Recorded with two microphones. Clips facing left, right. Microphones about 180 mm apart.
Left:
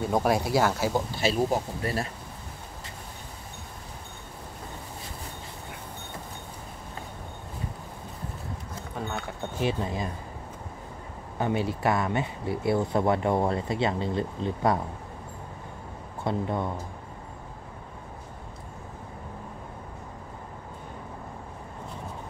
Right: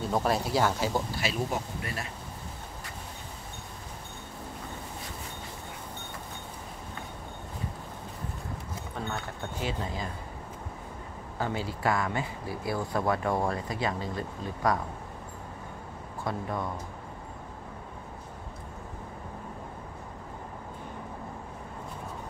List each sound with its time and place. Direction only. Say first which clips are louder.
0.1 s speech: left 3 dB; 10° left (ahead or behind)
1.2 s speech: left 6 dB; 35° left (ahead or behind)
9.6 s speech: left 6 dB; 20° left (ahead or behind)
11.3 s speech: left 5 dB; 25° left (ahead or behind)
16.3 s speech: left 4 dB; 25° left (ahead or behind)